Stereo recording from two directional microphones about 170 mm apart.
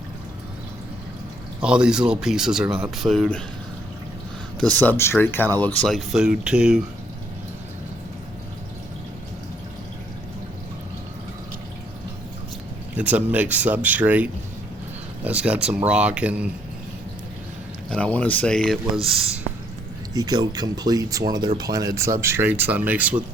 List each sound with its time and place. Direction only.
1.6 s speech: 5° right (ahead or behind)
4.6 s speech: 10° left (ahead or behind)
13.1 s speech: 10° right (ahead or behind)
17.9 s speech: 5° left (ahead or behind)
20.1 s speech: 25° right (ahead or behind)